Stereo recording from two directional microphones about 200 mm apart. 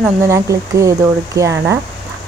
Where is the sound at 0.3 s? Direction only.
15° right (ahead or behind).